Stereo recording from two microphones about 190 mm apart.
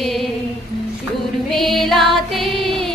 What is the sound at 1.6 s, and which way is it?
Music, centre (ahead or behind).